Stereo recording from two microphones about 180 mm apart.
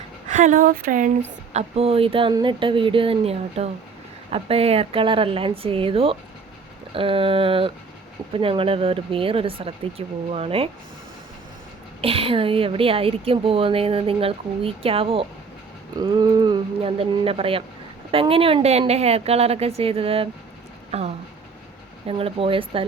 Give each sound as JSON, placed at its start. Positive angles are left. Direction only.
{"t": 0.3, "sound": "speech", "side_deg": -45}
{"t": 1.5, "sound": "speech", "side_deg": -35}
{"t": 12.0, "sound": "speech", "side_deg": -30}